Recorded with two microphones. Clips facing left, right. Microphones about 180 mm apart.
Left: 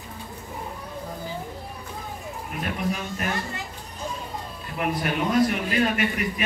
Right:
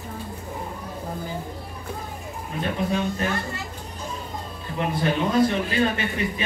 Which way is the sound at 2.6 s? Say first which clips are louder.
Right 4 dB; 30° right (ahead or behind).